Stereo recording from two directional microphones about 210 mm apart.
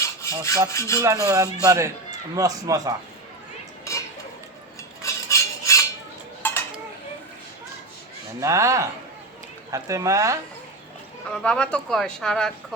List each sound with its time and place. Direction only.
0.0 s rub: 15° left (ahead or behind)
1.0 s speech: 15° right (ahead or behind)
3.9 s cutlery: 15° left (ahead or behind)
5.0 s a sound: 15° left (ahead or behind)
6.4 s dishes: 10° left (ahead or behind)
8.4 s speech: 15° right (ahead or behind)
11.3 s speech: 5° left (ahead or behind)